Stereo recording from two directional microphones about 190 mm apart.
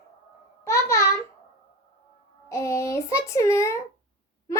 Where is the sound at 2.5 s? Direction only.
15° left (ahead or behind).